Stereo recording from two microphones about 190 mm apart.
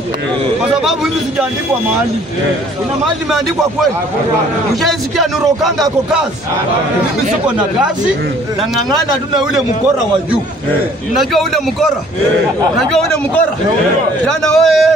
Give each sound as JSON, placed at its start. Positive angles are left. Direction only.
{"t": 3.3, "sound": "speech", "side_deg": 0}
{"t": 11.1, "sound": "speech", "side_deg": 0}
{"t": 12.7, "sound": "speech", "side_deg": 5}